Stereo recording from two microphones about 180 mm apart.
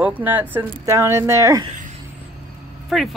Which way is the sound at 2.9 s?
Centre (ahead or behind).